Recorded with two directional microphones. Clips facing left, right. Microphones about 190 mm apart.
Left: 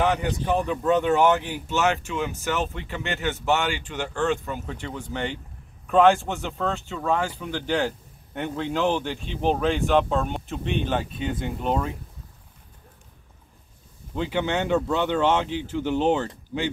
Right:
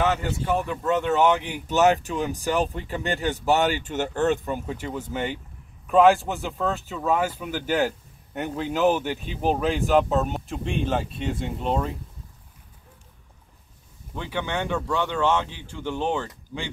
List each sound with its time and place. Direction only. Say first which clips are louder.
0.0 s speech: left 1 dB; 15° left (ahead or behind)
1.7 s speech: right 4 dB; 40° right (ahead or behind)
4.5 s speech: right 3 dB; 15° right (ahead or behind); by 11.9 s 5° left (ahead or behind)
14.1 s speech: left 4 dB; 15° left (ahead or behind)